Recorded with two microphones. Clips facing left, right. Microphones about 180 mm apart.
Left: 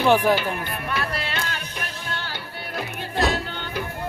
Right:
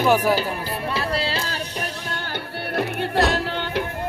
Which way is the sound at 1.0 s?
30° right (ahead or behind).